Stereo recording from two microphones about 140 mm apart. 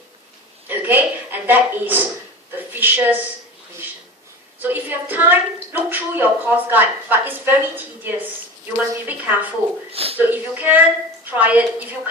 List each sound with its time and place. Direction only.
0.7 s a woman's voice: 15° right (ahead or behind)
4.6 s a woman's voice: 15° right (ahead or behind)
9.9 s a sound: 45° right (ahead or behind)
10.2 s a woman's voice: 15° right (ahead or behind)